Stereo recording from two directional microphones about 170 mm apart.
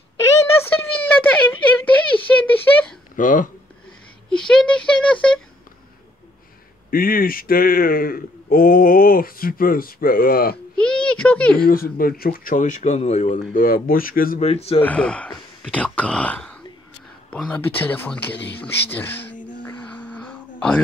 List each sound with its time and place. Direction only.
0.7 s a sound: 10° left (ahead or behind)
3.2 s speech: 50° left (ahead or behind)
4.3 s a sound: 5° left (ahead or behind)
6.9 s speech: 60° left (ahead or behind)
10.8 s speech: 5° left (ahead or behind)
11.5 s speech: 60° left (ahead or behind)
14.4 s speech: 35° left (ahead or behind)
14.8 s speech: 5° left (ahead or behind)
19.6 s a sound: 10° left (ahead or behind)